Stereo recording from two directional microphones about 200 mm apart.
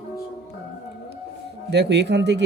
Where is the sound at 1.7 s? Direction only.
60° right (ahead or behind).